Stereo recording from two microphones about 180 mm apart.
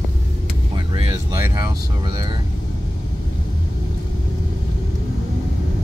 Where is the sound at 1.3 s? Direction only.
15° right (ahead or behind).